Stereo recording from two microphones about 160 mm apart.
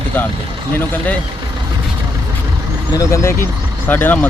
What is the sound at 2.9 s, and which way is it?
Speech, 20° left (ahead or behind).